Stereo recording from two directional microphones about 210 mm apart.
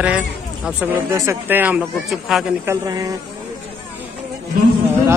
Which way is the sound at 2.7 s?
15° right (ahead or behind).